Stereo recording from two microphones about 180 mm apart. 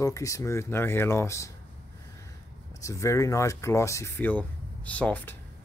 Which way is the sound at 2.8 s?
15° left (ahead or behind).